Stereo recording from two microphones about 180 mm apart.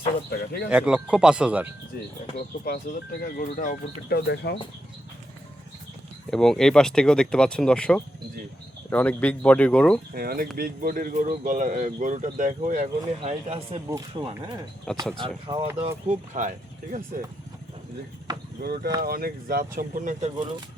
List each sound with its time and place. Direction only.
0.3 s speech: 60° left (ahead or behind)
0.7 s speech: 5° right (ahead or behind)
2.6 s speech: 55° left (ahead or behind)
4.4 s speech: 65° left (ahead or behind)
6.3 s speech: 5° left (ahead or behind)
10.2 s speech: 55° right (ahead or behind); by 14.5 s 30° right (ahead or behind)
15.0 s speech: 5° left (ahead or behind)
15.5 s speech: 25° right (ahead or behind)
15.8 s speech: 45° right (ahead or behind)
18.3 s a sound: 25° right (ahead or behind)
18.6 s speech: 60° right (ahead or behind)